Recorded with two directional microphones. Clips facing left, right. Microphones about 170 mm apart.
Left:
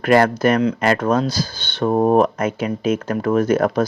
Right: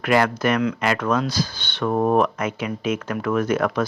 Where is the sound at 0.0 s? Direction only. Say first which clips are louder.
Left 5 dB; 45° left (ahead or behind).